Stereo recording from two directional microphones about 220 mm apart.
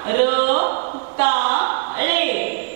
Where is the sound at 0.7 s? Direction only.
35° right (ahead or behind).